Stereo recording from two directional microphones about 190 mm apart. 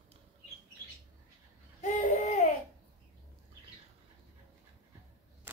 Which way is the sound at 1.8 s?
40° left (ahead or behind).